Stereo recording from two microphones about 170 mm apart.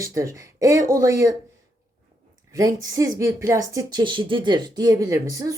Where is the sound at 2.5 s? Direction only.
20° right (ahead or behind).